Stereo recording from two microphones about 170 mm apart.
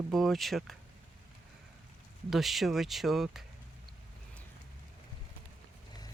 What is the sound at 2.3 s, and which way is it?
Speech, centre (ahead or behind).